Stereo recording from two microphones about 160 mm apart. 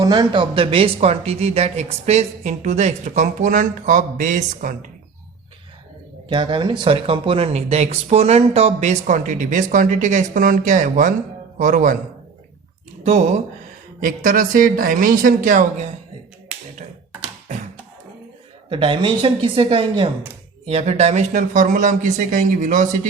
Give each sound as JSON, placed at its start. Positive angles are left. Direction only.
{"t": 0.0, "sound": "speech", "side_deg": -25}
{"t": 6.2, "sound": "speech", "side_deg": -30}
{"t": 14.0, "sound": "a woman's voice", "side_deg": -60}
{"t": 16.5, "sound": "tap", "side_deg": -5}
{"t": 18.7, "sound": "a woman's voice", "side_deg": -30}